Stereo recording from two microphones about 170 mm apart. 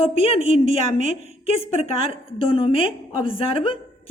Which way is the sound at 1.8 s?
35° left (ahead or behind).